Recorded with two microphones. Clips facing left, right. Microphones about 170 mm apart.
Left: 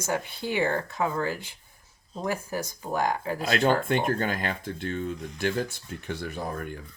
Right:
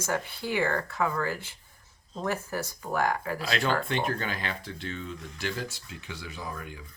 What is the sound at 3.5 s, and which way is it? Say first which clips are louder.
Speech: left 5 dB; 45° left (ahead or behind).